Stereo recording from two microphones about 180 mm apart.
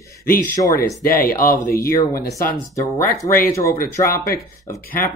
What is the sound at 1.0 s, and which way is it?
Speech, 55° left (ahead or behind).